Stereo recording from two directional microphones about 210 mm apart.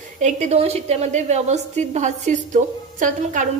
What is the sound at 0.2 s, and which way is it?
A woman's voice, 30° right (ahead or behind).